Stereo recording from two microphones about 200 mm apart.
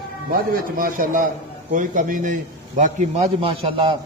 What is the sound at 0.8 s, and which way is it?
A man's voice, 40° right (ahead or behind).